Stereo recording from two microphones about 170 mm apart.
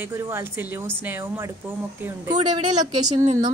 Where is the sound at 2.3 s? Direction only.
25° right (ahead or behind).